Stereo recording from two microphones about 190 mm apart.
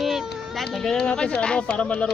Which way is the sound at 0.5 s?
Centre (ahead or behind).